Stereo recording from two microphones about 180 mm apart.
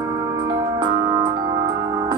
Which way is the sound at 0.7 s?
25° right (ahead or behind).